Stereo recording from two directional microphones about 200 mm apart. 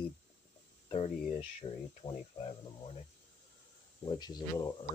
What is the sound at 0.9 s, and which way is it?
Speech, 30° left (ahead or behind).